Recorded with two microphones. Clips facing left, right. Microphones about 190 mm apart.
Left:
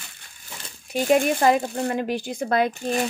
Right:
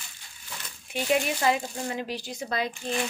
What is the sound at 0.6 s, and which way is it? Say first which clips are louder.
Speech: left 7 dB; 45° left (ahead or behind).